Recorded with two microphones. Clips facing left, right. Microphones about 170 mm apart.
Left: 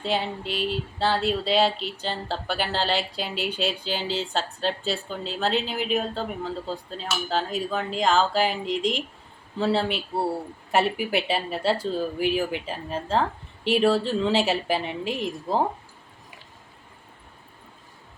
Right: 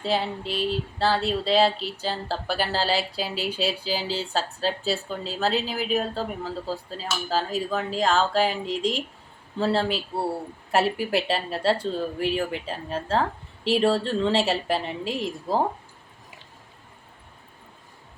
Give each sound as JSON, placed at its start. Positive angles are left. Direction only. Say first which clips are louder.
{"t": 0.0, "sound": "speech", "louder": "right 1 dB", "side_deg": 0}